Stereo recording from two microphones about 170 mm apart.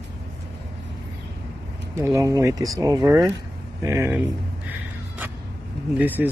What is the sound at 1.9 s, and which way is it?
Speech, 15° right (ahead or behind).